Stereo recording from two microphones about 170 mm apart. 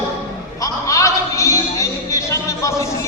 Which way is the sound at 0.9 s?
20° left (ahead or behind).